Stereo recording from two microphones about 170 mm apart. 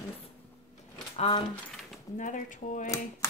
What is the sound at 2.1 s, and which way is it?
Speech, 50° left (ahead or behind).